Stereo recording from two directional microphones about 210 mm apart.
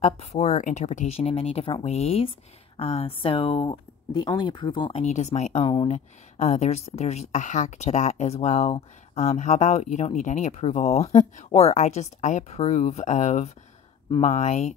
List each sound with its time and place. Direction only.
0.0 s speech: 30° left (ahead or behind)